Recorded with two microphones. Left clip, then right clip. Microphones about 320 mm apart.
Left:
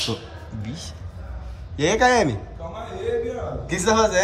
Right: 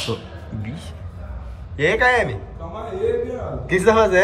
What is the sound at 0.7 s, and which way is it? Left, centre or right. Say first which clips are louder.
Speech: even; centre.